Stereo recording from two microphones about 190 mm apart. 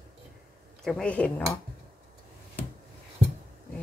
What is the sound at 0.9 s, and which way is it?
Speech, 5° left (ahead or behind).